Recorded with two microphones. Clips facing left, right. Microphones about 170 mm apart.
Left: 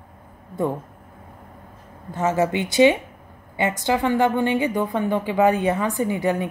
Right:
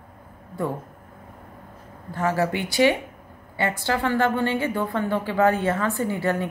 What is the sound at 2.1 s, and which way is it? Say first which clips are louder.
A woman's voice: left 3 dB; 20° left (ahead or behind).